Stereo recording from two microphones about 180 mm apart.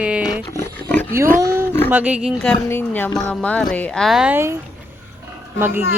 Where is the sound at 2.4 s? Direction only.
10° left (ahead or behind); by 4.6 s 15° right (ahead or behind).